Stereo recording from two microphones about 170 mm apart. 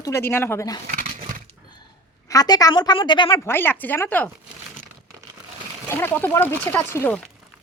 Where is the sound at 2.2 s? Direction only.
20° left (ahead or behind).